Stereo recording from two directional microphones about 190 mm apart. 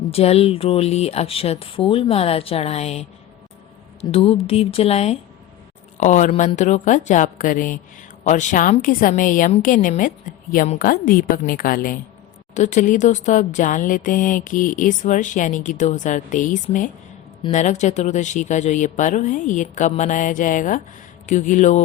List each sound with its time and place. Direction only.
0.1 s speech: 30° left (ahead or behind)
4.1 s a woman's voice: 30° left (ahead or behind)